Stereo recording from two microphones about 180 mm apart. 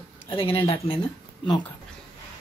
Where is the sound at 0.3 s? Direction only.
30° left (ahead or behind).